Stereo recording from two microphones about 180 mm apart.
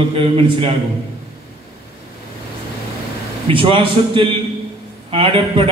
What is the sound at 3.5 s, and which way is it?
A man's voice, 30° right (ahead or behind).